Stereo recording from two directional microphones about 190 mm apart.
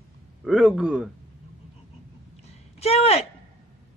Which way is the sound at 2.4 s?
35° left (ahead or behind).